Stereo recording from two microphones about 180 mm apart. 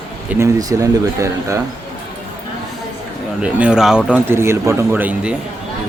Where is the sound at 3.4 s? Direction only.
5° right (ahead or behind).